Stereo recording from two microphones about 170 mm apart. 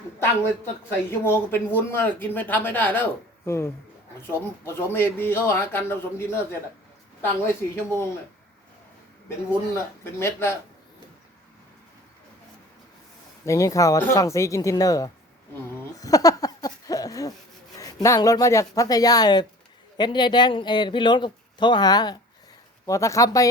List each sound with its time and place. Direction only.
0.9 s speech: 10° left (ahead or behind)
9.7 s speech: 15° left (ahead or behind)
13.4 s speech: 20° left (ahead or behind)
16.0 s a sound: 20° left (ahead or behind)
17.7 s speech: 20° left (ahead or behind)